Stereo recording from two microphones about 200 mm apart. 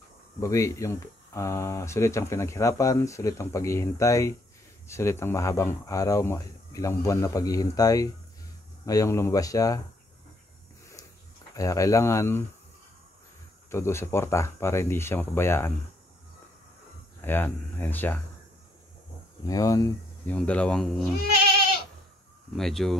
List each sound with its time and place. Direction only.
0.4 s speech: 15° left (ahead or behind)
11.5 s speech: 15° left (ahead or behind)
13.7 s speech: 15° left (ahead or behind)
17.2 s speech: 10° left (ahead or behind)
19.4 s speech: 20° left (ahead or behind)
20.2 s speech: 5° left (ahead or behind)
22.6 s speech: centre (ahead or behind)